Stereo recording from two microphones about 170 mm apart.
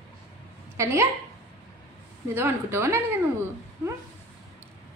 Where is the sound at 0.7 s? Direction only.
15° right (ahead or behind).